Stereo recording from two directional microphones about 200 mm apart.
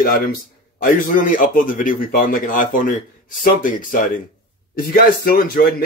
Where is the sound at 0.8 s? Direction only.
40° left (ahead or behind).